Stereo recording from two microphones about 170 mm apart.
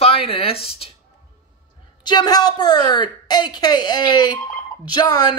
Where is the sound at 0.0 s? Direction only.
35° left (ahead or behind).